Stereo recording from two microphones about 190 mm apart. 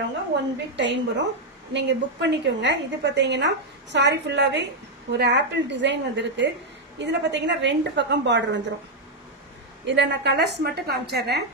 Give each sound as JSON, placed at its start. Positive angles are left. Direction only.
{"t": 0.7, "sound": "a woman's voice", "side_deg": -70}
{"t": 9.8, "sound": "a woman's voice", "side_deg": -65}